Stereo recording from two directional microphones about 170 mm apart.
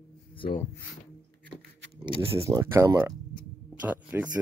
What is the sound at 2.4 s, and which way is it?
Speech, 15° right (ahead or behind).